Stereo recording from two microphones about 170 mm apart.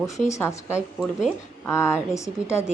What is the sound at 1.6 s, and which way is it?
A woman's voice, 15° left (ahead or behind).